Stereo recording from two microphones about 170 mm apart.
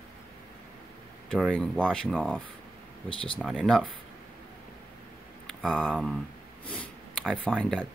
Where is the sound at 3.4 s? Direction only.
5° right (ahead or behind).